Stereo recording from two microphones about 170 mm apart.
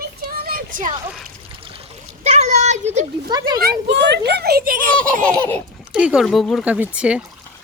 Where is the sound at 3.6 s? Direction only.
80° right; by 4.9 s 60° right (ahead or behind).